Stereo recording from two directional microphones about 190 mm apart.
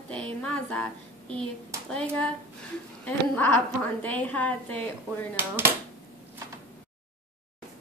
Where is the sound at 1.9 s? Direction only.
5° left (ahead or behind).